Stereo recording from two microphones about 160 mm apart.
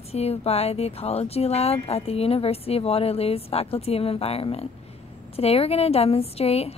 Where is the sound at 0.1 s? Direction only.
40° left (ahead or behind).